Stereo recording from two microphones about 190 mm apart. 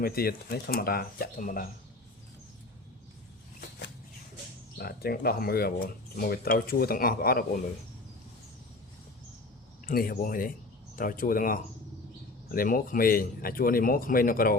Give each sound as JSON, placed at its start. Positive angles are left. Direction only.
{"t": 0.0, "sound": "speech", "side_deg": 55}
{"t": 3.6, "sound": "a sound", "side_deg": 60}
{"t": 4.8, "sound": "speech", "side_deg": 55}
{"t": 9.8, "sound": "speech", "side_deg": 50}